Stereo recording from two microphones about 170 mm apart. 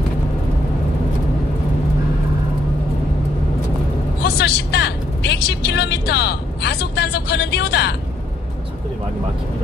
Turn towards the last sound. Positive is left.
turn(degrees=75)  # may be behind; listen again after turning